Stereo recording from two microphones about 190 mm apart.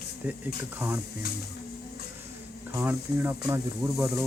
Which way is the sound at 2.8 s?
10° right (ahead or behind).